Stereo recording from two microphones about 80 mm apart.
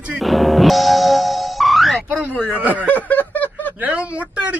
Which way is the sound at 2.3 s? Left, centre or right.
Centre.